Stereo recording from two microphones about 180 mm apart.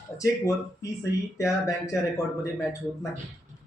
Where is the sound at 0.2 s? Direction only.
15° left (ahead or behind).